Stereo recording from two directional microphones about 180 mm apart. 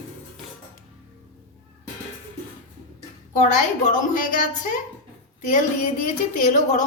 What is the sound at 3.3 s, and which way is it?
A woman's voice, 40° left (ahead or behind).